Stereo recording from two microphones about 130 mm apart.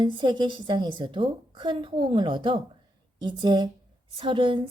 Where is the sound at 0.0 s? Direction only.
35° right (ahead or behind).